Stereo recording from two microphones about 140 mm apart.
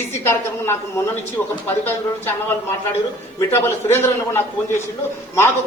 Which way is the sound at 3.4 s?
20° left (ahead or behind).